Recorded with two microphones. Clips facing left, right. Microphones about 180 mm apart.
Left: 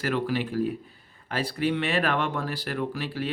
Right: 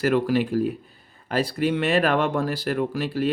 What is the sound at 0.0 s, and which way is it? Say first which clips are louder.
Speech: right 6 dB; 45° right (ahead or behind).